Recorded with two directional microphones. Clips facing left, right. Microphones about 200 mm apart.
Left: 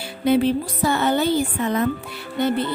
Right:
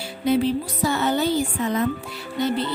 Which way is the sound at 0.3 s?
55° left (ahead or behind).